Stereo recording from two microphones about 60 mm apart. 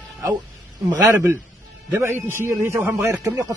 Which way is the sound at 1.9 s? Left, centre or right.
Right.